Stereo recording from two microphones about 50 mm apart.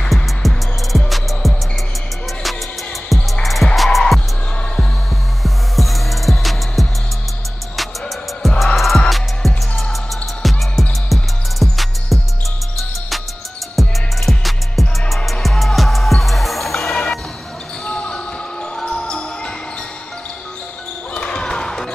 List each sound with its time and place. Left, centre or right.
0.1 s music: centre
3.1 s music: centre
5.4 s music: centre
8.4 s music: centre
10.4 s music: centre
13.7 s music: centre
16.7 s music: centre
17.8 s basketball bounce: left
18.8 s music: centre
21.1 s basketball bounce: left